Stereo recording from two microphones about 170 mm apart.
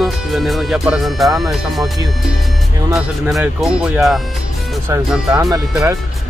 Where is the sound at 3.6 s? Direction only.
5° right (ahead or behind).